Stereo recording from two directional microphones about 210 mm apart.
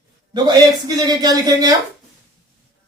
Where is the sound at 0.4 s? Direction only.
20° right (ahead or behind).